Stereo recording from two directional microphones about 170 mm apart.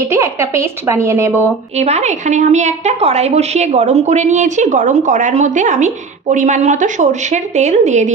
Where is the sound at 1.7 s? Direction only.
40° right (ahead or behind).